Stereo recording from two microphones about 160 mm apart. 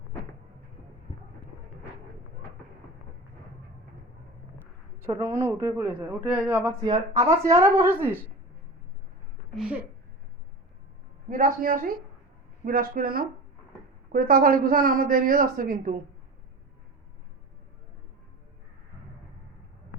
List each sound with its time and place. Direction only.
5.2 s a man's voice: 15° right (ahead or behind)
6.8 s speech: 30° right (ahead or behind)
7.6 s a man's voice: 15° right (ahead or behind)
9.6 s a man's voice: 5° right (ahead or behind)
11.3 s a woman's voice: 55° right (ahead or behind)